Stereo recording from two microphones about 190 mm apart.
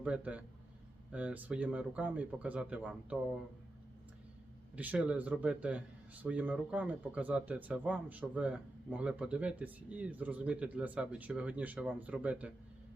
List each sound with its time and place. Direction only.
0.0 s speech: 5° right (ahead or behind)
4.8 s speech: 5° right (ahead or behind)